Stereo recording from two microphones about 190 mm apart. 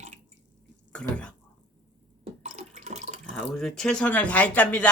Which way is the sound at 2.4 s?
35° right (ahead or behind).